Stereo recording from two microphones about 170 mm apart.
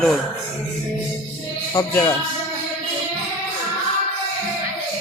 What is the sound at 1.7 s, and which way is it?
Speech, 20° left (ahead or behind).